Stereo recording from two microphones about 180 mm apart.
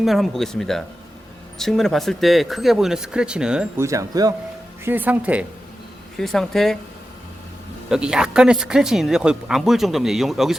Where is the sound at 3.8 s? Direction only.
15° right (ahead or behind); by 6.7 s centre (ahead or behind).